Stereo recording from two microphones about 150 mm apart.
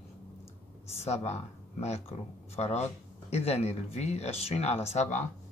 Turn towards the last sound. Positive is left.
turn(degrees=50)  # may be behind; listen again after turning